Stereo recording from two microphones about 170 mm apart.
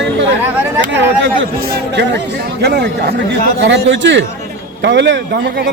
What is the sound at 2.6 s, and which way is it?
Speech, 75° right (ahead or behind).